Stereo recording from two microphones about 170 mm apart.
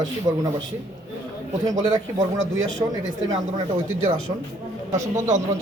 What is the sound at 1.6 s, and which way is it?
Speech, 25° right (ahead or behind).